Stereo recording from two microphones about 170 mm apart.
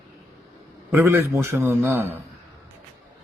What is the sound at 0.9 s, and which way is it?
Speech, 15° right (ahead or behind).